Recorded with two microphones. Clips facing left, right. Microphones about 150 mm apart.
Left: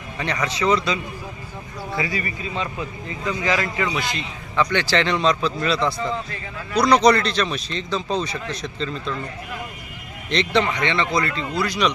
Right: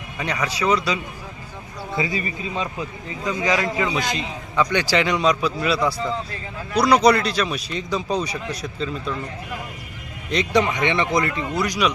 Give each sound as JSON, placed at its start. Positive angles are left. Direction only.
{"t": 0.2, "sound": "a man's voice", "side_deg": -10}
{"t": 2.0, "sound": "a man's voice", "side_deg": -20}
{"t": 10.2, "sound": "a man's voice", "side_deg": -10}